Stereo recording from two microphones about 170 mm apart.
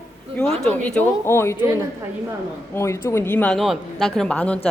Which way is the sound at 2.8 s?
15° left (ahead or behind).